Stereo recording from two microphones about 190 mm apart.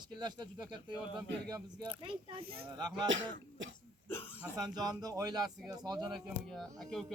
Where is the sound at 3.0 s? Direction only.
85° right.